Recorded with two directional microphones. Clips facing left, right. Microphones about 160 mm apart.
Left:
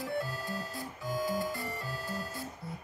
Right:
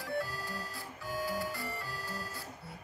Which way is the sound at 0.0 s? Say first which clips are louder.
Left 2 dB; 20° left (ahead or behind).